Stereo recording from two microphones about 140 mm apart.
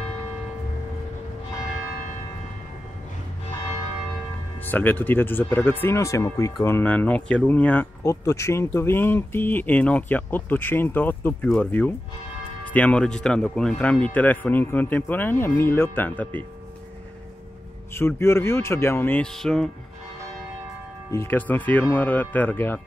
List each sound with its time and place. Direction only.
4.6 s speech: 15° left (ahead or behind)
17.9 s speech: 20° left (ahead or behind)
19.2 s speech: 5° left (ahead or behind)
21.1 s speech: 15° left (ahead or behind)